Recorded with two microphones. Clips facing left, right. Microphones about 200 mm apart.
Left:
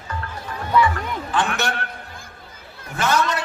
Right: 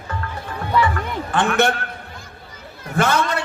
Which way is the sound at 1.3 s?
55° right (ahead or behind).